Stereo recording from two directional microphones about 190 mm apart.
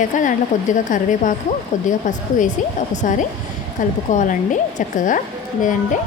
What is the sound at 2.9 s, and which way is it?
Speech, 40° left (ahead or behind).